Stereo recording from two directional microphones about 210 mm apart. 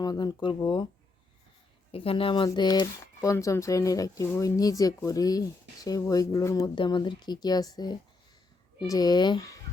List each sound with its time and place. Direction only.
0.0 s speech: 20° left (ahead or behind)
1.9 s speech: 25° left (ahead or behind)